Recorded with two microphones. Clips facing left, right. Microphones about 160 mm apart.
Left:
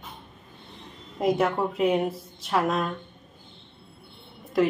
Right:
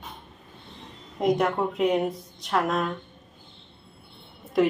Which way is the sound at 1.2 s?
5° left (ahead or behind).